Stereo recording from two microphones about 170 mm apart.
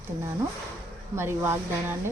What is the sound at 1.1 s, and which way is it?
Speech, 15° right (ahead or behind).